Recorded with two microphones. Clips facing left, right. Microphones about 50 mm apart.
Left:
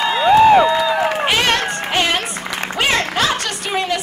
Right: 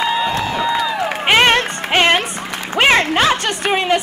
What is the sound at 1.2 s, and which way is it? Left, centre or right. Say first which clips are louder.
Music: right 4 dB; right.